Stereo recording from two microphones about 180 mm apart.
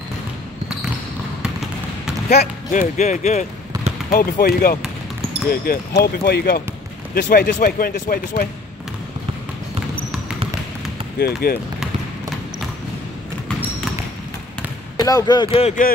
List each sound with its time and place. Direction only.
2.2 s speech: 55° left (ahead or behind)
4.1 s speech: 55° left (ahead or behind)
11.1 s speech: 60° left (ahead or behind)
15.0 s speech: 20° left (ahead or behind)